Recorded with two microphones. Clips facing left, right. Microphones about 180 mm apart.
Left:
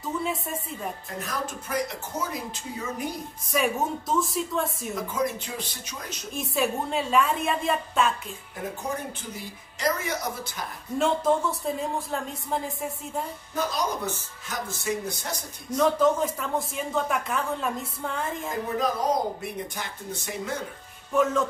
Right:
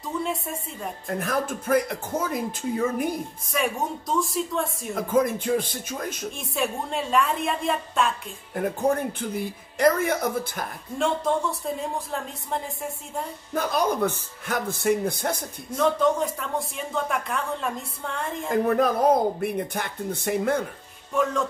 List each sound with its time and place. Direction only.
0.2 s speech: centre (ahead or behind)
1.0 s speech: 55° right (ahead or behind)
3.5 s speech: centre (ahead or behind)
4.9 s speech: 55° right (ahead or behind)
6.3 s speech: centre (ahead or behind)
8.5 s speech: 55° right (ahead or behind)
11.0 s speech: centre (ahead or behind)
13.6 s speech: 55° right (ahead or behind)
15.8 s speech: centre (ahead or behind)
18.8 s speech: 55° right (ahead or behind)
21.1 s speech: centre (ahead or behind)